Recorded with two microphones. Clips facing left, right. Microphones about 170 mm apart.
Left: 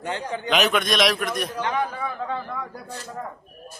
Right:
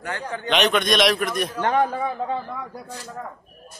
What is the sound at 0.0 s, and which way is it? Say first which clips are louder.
Speech: left 1 dB; 15° left (ahead or behind).